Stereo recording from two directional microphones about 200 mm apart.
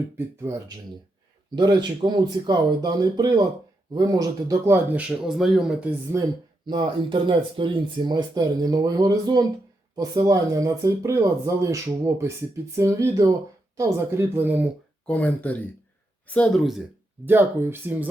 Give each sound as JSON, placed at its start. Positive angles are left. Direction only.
{"t": 0.5, "sound": "speech", "side_deg": -10}
{"t": 6.7, "sound": "speech", "side_deg": -25}
{"t": 15.0, "sound": "speech", "side_deg": 10}
{"t": 17.2, "sound": "speech", "side_deg": -10}